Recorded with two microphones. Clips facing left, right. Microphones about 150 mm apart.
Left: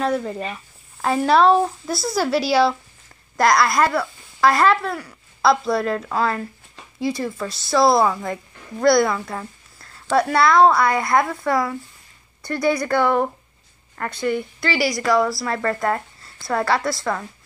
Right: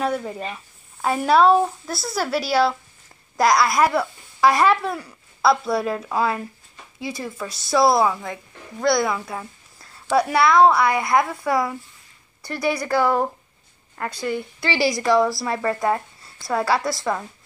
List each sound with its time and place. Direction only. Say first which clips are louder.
0.0 s speech: left 2 dB; 5° right (ahead or behind)
5.4 s a woman's voice: left 1 dB; 5° right (ahead or behind)
16.8 s speech: even; 15° right (ahead or behind)